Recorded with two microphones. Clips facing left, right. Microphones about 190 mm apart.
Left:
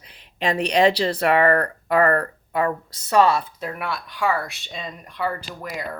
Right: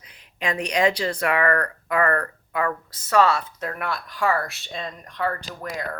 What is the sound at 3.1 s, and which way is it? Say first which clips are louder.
Speech: left 2 dB; 15° left (ahead or behind).